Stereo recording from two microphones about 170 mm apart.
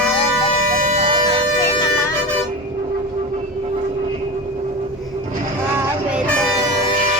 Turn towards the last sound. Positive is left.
turn(degrees=-5)  # may be behind; listen again after turning